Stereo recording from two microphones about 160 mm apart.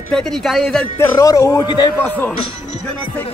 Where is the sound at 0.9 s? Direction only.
20° left (ahead or behind).